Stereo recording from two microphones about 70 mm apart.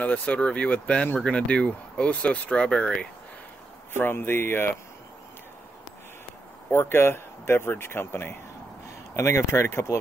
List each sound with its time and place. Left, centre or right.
0.0 s speech: left
3.9 s speech: left
6.7 s speech: left